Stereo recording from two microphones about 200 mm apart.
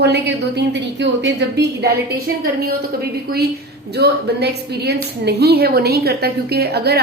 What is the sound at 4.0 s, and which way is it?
A woman's voice, 55° right (ahead or behind).